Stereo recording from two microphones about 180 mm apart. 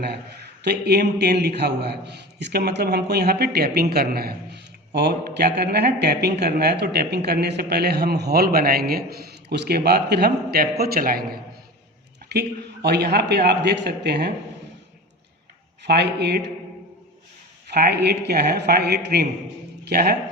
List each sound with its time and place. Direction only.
0.6 s a man's voice: 65° right (ahead or behind)
12.3 s a man's voice: 65° right (ahead or behind)
15.9 s speech: 65° right (ahead or behind)
17.7 s a man's voice: 65° right (ahead or behind)